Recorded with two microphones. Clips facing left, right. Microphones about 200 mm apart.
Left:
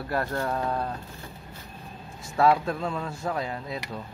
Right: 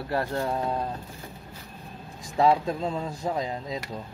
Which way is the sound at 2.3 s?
20° right (ahead or behind).